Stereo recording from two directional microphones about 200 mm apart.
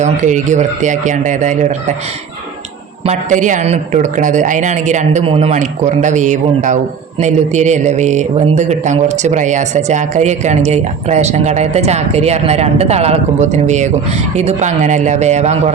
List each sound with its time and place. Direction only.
0.0 s speech: 40° right (ahead or behind)
3.1 s speech: 40° right (ahead or behind)